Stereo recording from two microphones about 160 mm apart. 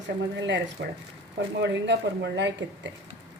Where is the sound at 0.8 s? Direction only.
90° right.